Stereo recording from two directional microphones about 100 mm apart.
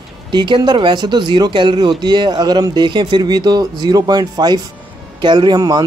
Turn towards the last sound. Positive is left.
turn(degrees=-45)  # may be behind; listen again after turning